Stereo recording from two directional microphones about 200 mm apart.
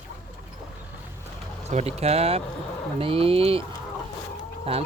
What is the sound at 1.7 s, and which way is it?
Speech, 30° right (ahead or behind).